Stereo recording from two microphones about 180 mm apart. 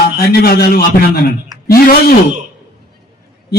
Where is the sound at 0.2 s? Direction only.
60° left (ahead or behind).